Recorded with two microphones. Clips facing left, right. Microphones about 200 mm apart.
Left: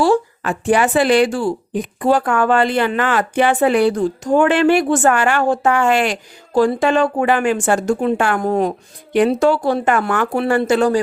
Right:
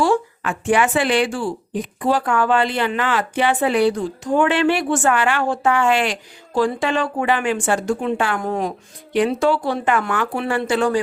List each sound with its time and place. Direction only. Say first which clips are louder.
0.0 s a woman's voice: left 3 dB; 35° left (ahead or behind)